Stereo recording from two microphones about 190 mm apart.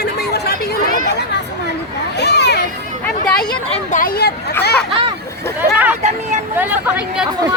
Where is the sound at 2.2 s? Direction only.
60° left (ahead or behind).